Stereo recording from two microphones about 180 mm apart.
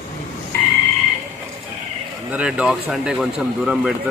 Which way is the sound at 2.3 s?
5° right (ahead or behind).